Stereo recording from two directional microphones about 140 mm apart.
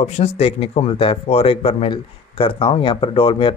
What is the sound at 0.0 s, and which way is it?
Speech, 50° left (ahead or behind).